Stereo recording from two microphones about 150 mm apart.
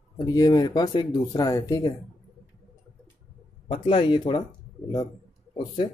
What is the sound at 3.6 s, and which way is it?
Speech, 45° left (ahead or behind).